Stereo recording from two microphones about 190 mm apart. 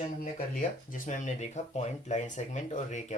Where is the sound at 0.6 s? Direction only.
40° left (ahead or behind).